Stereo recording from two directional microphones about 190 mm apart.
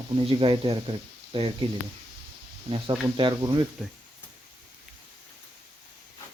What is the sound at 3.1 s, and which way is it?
Speech, 25° right (ahead or behind).